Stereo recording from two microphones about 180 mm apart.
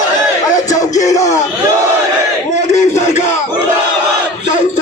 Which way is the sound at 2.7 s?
40° left (ahead or behind).